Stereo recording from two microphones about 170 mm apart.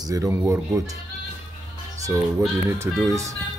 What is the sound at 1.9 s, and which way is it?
Music, 20° right (ahead or behind).